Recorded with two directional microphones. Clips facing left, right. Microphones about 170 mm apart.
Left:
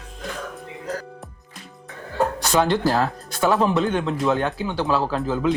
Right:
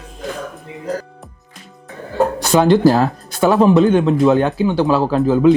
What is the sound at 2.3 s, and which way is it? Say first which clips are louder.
Speech: right 9 dB; 10° right (ahead or behind).